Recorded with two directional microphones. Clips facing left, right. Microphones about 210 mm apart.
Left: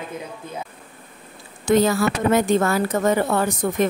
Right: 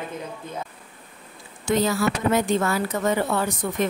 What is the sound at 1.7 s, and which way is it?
Speech, 50° left (ahead or behind).